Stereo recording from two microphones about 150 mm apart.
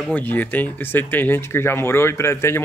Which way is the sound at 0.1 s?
10° left (ahead or behind).